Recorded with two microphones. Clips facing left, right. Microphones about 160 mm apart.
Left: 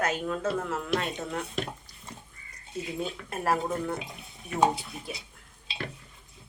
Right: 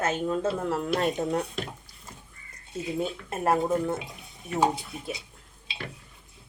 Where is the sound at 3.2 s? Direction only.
20° right (ahead or behind).